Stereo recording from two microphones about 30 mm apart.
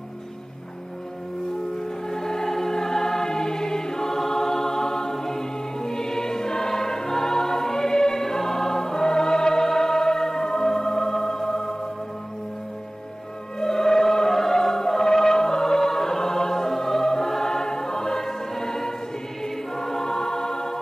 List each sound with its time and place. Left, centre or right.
2.0 s choir: centre
13.6 s music: centre
19.4 s choir: centre